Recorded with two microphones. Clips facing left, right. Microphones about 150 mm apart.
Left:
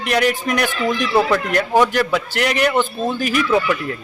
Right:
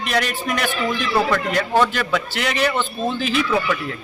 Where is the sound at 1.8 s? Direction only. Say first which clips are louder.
Left 4 dB; 15° left (ahead or behind).